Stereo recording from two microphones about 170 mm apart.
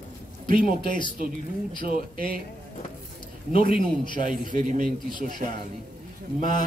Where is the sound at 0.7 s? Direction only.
55° right (ahead or behind).